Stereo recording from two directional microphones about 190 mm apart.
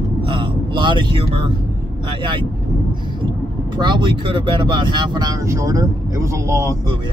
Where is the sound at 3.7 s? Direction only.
25° right (ahead or behind).